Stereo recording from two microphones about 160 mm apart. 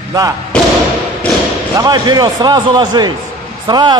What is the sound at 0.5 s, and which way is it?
Thump, 5° left (ahead or behind).